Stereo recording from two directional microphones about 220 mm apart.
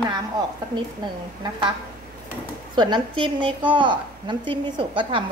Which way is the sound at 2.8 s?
20° right (ahead or behind).